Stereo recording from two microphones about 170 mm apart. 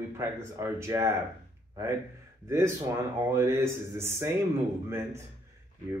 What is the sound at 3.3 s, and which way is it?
Speech, 15° right (ahead or behind).